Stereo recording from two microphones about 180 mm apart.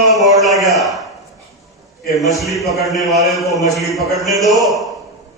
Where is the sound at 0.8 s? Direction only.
Centre (ahead or behind).